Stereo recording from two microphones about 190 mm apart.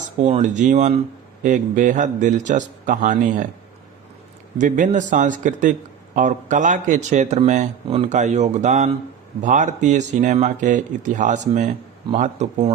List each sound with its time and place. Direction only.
0.2 s speech: 40° right (ahead or behind)
4.5 s speech: 40° right (ahead or behind)